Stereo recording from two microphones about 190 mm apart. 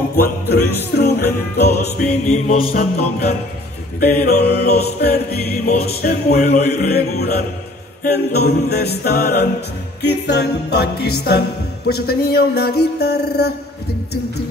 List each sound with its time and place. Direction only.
0.2 s music: 55° left (ahead or behind)
2.2 s mantra: 35° left (ahead or behind)
2.7 s music: 50° left (ahead or behind)